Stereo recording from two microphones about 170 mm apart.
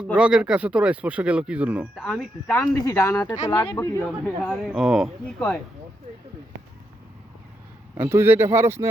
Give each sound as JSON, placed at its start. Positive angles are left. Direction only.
{"t": 0.0, "sound": "speech", "side_deg": -5}
{"t": 2.5, "sound": "speech", "side_deg": 15}
{"t": 4.4, "sound": "speech", "side_deg": -5}
{"t": 7.9, "sound": "speech", "side_deg": -15}